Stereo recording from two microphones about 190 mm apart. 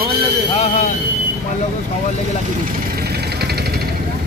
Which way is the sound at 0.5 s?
35° left (ahead or behind).